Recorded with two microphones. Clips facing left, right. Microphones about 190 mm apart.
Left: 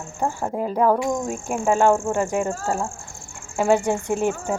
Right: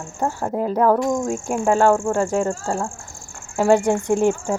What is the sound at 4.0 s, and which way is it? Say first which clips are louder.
Speech: right 4 dB; 15° right (ahead or behind).